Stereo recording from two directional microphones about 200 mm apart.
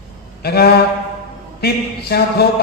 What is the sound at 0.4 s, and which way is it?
A man's voice, 55° left (ahead or behind).